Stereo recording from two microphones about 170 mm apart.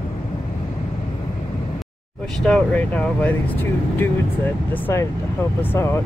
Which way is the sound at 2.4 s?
5° left (ahead or behind).